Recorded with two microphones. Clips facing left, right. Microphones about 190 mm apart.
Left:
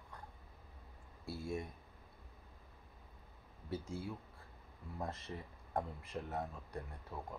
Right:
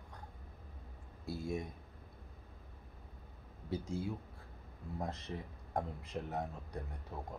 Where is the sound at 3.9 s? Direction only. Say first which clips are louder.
Right 4 dB; 15° right (ahead or behind).